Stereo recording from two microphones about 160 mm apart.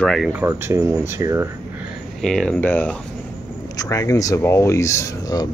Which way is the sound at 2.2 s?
5° left (ahead or behind).